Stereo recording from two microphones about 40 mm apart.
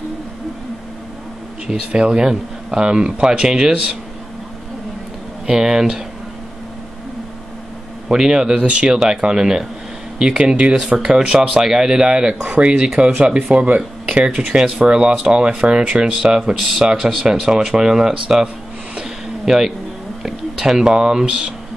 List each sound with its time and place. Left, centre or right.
1.7 s speech: right
5.5 s speech: centre
8.1 s speech: centre
10.3 s speech: right
12.4 s speech: right
12.7 s speech: right
16.5 s speech: centre
19.0 s a sound: centre
20.2 s speech: centre